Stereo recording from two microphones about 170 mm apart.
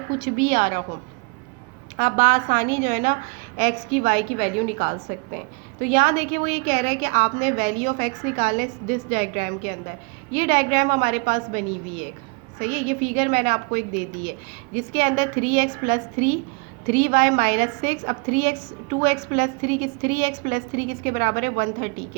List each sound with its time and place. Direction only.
0.2 s a woman's voice: 55° right (ahead or behind)
2.0 s a woman's voice: 50° right (ahead or behind)